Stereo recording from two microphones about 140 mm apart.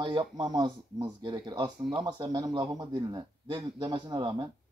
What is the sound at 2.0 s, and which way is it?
Speech, 30° right (ahead or behind).